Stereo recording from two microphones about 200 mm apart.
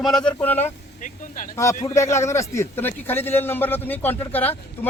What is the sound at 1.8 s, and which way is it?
A man's voice, 15° left (ahead or behind).